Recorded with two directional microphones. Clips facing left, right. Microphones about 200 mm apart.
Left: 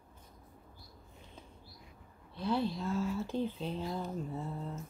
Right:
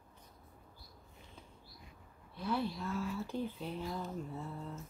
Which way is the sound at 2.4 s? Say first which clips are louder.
Left 3 dB; 25° left (ahead or behind).